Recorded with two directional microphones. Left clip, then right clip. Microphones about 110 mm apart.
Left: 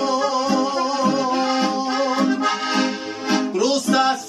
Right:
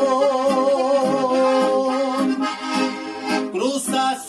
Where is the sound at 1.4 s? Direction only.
25° right (ahead or behind).